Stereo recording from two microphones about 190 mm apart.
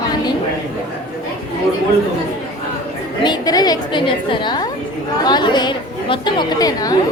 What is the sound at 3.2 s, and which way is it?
A woman's voice, 20° left (ahead or behind).